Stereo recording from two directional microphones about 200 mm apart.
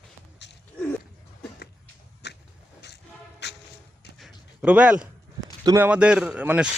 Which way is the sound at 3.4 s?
60° left (ahead or behind).